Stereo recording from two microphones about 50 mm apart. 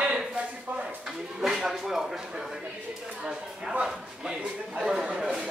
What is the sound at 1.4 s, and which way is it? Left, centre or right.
Speech, centre.